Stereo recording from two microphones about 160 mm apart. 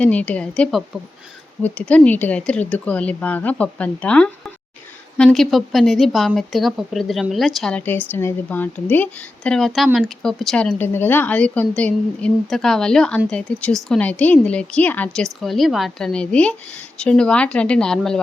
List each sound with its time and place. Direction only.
0.0 s speech: 10° left (ahead or behind)